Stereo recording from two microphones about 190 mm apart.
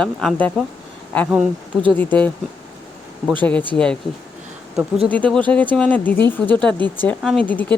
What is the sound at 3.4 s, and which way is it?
Speech, 10° left (ahead or behind).